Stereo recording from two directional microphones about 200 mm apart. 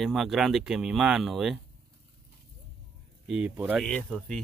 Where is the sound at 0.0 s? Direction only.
Centre (ahead or behind).